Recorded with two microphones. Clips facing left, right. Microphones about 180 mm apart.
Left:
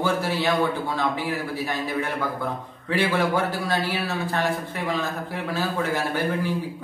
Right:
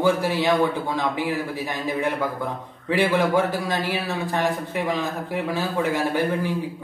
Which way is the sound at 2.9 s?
15° right (ahead or behind).